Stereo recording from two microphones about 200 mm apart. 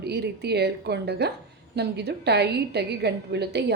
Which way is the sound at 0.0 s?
55° right (ahead or behind).